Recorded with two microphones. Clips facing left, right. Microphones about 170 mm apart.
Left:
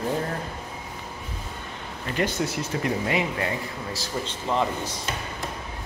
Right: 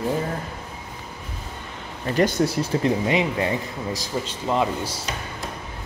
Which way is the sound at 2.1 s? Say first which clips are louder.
Right 6 dB; 35° right (ahead or behind).